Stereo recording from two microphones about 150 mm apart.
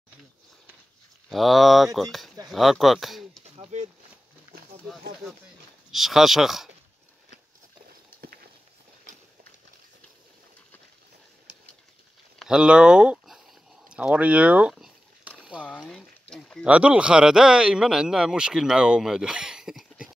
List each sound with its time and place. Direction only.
1.3 s speech: centre (ahead or behind)
3.5 s a sound: 50° right (ahead or behind)
5.9 s speech: centre (ahead or behind)
8.2 s walk: 90° right
12.4 s speech: 5° right (ahead or behind)
13.8 s a sound: 5° right (ahead or behind)
15.6 s speech: 5° left (ahead or behind)
16.6 s speech: 10° right (ahead or behind)